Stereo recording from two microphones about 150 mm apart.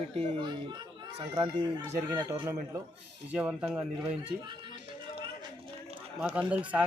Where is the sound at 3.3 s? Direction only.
10° right (ahead or behind).